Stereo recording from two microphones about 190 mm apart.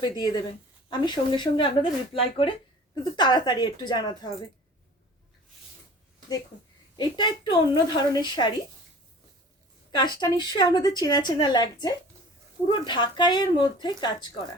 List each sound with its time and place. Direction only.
0.0 s a woman's voice: 20° left (ahead or behind)
3.0 s a woman's voice: 25° left (ahead or behind)
6.9 s a woman's voice: 25° left (ahead or behind)
9.9 s a woman's voice: 25° left (ahead or behind)